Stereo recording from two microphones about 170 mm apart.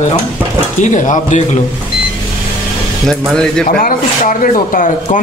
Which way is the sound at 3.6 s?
55° left (ahead or behind).